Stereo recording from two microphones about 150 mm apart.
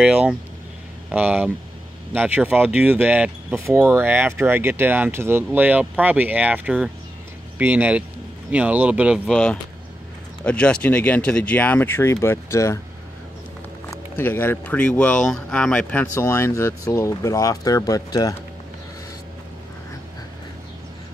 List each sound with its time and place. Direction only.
0.0 s speech: 5° right (ahead or behind)
9.2 s speech: 5° left (ahead or behind)
13.8 s speech: 15° left (ahead or behind)